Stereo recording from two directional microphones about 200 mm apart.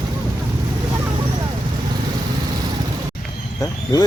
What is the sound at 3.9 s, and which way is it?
Speech, 20° left (ahead or behind).